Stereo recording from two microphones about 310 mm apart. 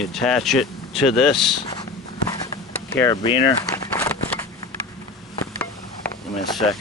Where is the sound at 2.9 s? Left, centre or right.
Centre.